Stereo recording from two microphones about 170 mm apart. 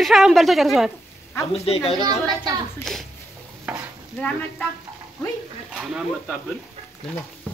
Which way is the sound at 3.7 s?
5° right (ahead or behind).